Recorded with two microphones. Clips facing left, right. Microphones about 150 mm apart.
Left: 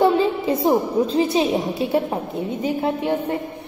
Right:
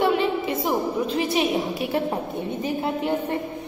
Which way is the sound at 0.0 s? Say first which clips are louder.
Left 4 dB; 35° left (ahead or behind).